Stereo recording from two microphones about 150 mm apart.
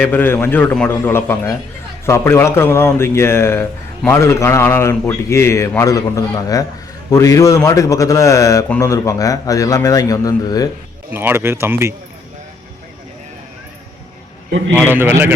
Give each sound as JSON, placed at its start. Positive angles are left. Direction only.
{"t": 0.0, "sound": "a man's voice", "side_deg": 15}
{"t": 11.1, "sound": "speech", "side_deg": -15}
{"t": 14.8, "sound": "speech", "side_deg": -15}